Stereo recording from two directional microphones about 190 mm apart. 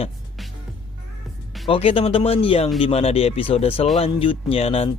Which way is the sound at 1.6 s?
30° left (ahead or behind).